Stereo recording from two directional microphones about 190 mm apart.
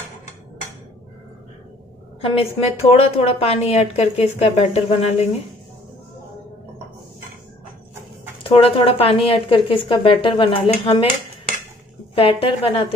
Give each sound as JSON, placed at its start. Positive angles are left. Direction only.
{"t": 2.2, "sound": "a woman's voice", "side_deg": 30}
{"t": 8.5, "sound": "a woman's voice", "side_deg": 30}
{"t": 12.2, "sound": "a woman's voice", "side_deg": 30}